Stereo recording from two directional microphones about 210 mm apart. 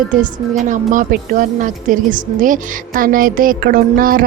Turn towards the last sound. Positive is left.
turn(degrees=-40)  # may be behind; listen again after turning